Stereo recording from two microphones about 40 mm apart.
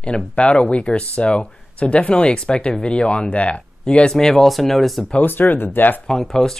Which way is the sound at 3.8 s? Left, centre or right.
Centre.